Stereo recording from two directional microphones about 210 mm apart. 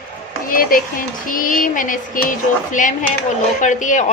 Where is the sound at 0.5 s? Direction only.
40° left (ahead or behind).